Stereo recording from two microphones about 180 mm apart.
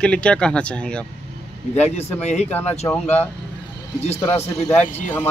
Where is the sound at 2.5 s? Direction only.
10° left (ahead or behind).